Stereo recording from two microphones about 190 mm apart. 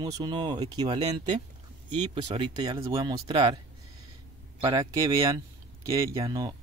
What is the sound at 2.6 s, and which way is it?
Speech, 20° right (ahead or behind).